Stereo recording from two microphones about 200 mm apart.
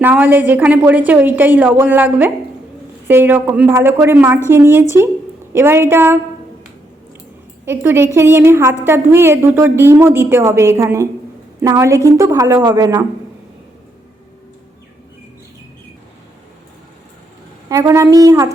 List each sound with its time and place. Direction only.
0.0 s a woman's voice: 10° right (ahead or behind)
7.6 s a woman's voice: 10° right (ahead or behind)
17.7 s a woman's voice: 15° right (ahead or behind)